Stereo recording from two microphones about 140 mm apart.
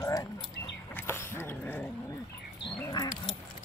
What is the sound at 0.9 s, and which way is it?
Dog, 15° left (ahead or behind).